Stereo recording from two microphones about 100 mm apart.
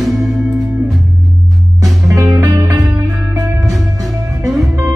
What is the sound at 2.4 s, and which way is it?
Music, 30° right (ahead or behind).